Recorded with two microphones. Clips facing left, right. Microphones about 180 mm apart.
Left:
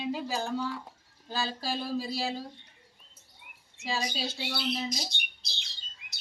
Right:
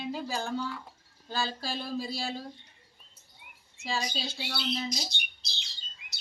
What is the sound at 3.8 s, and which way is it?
Speech, 10° left (ahead or behind).